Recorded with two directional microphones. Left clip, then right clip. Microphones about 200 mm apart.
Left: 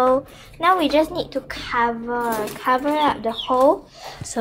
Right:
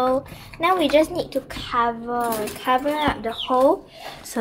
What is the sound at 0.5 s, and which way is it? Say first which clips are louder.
A woman's voice: left 1 dB; 5° right (ahead or behind).